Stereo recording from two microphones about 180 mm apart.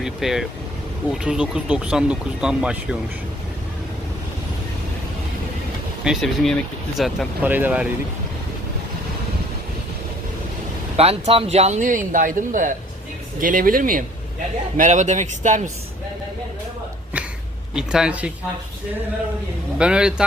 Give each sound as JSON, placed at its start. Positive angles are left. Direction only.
{"t": 0.0, "sound": "speech", "side_deg": 0}
{"t": 6.1, "sound": "speech", "side_deg": 0}
{"t": 10.9, "sound": "speech", "side_deg": -35}
{"t": 17.7, "sound": "speech", "side_deg": -5}
{"t": 19.8, "sound": "speech", "side_deg": -5}